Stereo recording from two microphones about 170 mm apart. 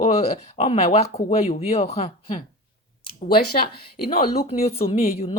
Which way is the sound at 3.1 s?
60° left (ahead or behind).